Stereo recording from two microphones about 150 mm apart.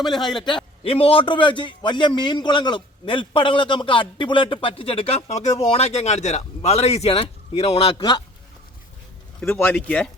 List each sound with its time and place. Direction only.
0.1 s a man's voice: 30° left (ahead or behind)
9.4 s speech: 15° left (ahead or behind)